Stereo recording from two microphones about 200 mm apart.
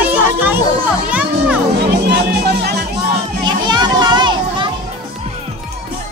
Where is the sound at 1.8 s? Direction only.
55° right (ahead or behind).